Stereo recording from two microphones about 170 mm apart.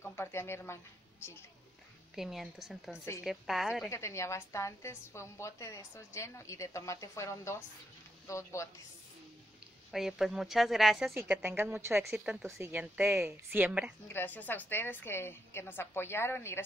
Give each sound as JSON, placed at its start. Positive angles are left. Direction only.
{"t": 0.0, "sound": "speech", "side_deg": 15}
{"t": 2.1, "sound": "a woman's voice", "side_deg": 0}
{"t": 3.9, "sound": "a woman's voice", "side_deg": 15}
{"t": 9.8, "sound": "a woman's voice", "side_deg": 0}
{"t": 12.1, "sound": "a woman's voice", "side_deg": -5}
{"t": 12.4, "sound": "a woman's voice", "side_deg": -15}
{"t": 14.0, "sound": "a woman's voice", "side_deg": 10}